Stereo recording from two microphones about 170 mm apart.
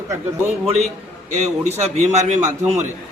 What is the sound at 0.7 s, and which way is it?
Speech, 40° right (ahead or behind).